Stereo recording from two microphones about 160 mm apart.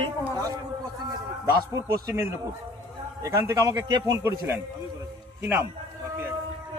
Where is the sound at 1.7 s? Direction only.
20° right (ahead or behind).